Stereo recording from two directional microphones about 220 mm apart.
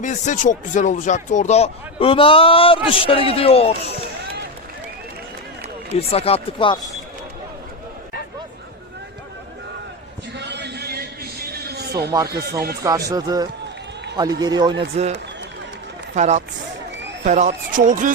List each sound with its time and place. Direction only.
0.0 s speech: 35° left (ahead or behind)
5.9 s speech: 30° left (ahead or behind)
10.3 s a sound: 50° right (ahead or behind)
12.3 s speech: 45° right (ahead or behind)
13.1 s a man's voice: 15° right (ahead or behind)
16.1 s speech: 30° right (ahead or behind)